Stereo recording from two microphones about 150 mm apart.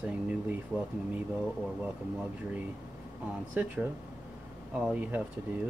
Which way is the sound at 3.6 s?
10° right (ahead or behind).